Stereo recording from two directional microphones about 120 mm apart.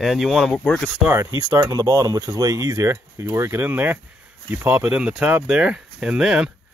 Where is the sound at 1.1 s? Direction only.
25° right (ahead or behind).